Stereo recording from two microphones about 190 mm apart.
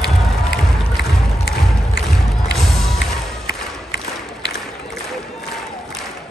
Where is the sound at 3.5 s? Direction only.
60° left (ahead or behind).